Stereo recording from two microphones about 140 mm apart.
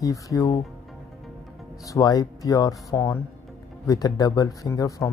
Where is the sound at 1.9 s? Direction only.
25° left (ahead or behind).